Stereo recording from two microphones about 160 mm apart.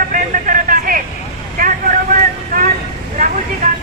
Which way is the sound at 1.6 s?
55° right (ahead or behind).